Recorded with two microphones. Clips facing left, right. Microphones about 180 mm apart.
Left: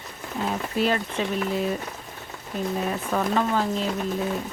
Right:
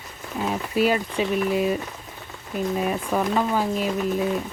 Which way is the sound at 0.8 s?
10° right (ahead or behind).